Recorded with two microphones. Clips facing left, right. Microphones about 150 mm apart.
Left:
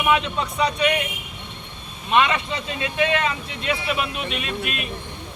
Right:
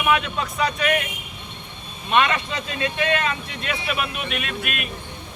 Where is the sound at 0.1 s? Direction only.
25° left (ahead or behind).